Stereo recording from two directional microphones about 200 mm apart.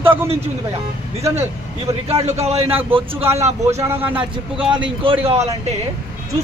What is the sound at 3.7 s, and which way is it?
A man's voice, 15° right (ahead or behind).